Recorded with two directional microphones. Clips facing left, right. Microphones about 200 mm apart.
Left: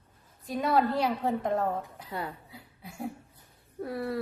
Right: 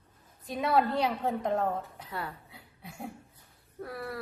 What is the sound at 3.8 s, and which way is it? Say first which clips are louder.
Speech: left 6 dB; 25° left (ahead or behind).